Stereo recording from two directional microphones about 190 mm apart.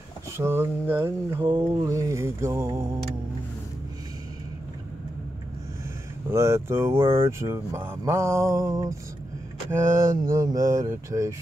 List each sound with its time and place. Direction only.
0.4 s speech: 10° right (ahead or behind)
6.3 s speech: 15° right (ahead or behind)